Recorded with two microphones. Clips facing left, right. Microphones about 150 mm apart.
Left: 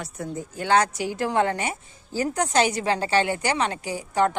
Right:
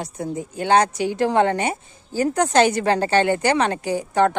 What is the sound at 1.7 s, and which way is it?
Speech, 40° right (ahead or behind).